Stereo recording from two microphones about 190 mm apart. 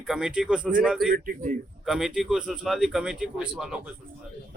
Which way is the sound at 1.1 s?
45° right (ahead or behind).